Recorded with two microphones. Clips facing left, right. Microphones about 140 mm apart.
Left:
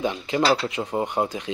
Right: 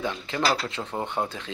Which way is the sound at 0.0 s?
20° left (ahead or behind).